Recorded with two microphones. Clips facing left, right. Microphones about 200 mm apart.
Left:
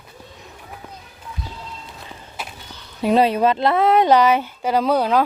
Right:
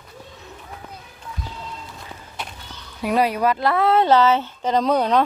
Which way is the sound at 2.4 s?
5° left (ahead or behind).